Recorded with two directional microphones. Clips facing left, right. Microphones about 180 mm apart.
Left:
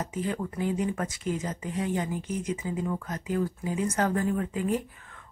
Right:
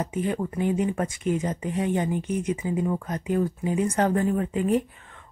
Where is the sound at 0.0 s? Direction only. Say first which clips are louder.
Right 4 dB; 20° right (ahead or behind).